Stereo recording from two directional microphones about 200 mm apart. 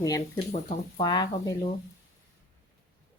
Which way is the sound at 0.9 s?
20° left (ahead or behind).